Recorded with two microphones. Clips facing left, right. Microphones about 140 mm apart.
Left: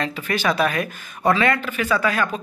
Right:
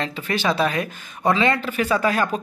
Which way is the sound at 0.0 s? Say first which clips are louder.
Left 1 dB; 25° right (ahead or behind).